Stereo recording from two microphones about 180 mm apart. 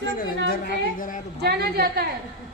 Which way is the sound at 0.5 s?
55° left (ahead or behind).